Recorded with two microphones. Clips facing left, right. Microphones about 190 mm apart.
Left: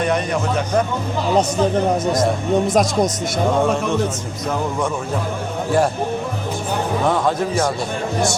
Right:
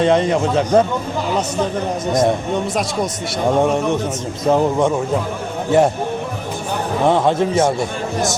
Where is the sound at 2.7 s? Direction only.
45° left (ahead or behind).